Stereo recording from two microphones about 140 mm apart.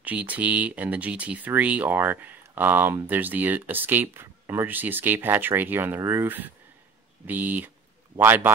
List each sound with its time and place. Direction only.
0.0 s speech: 10° right (ahead or behind)